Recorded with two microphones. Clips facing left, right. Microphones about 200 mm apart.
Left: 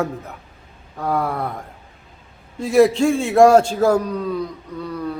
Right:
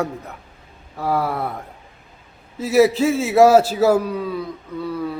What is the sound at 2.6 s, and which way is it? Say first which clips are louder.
A man's voice: left 1 dB; 5° right (ahead or behind).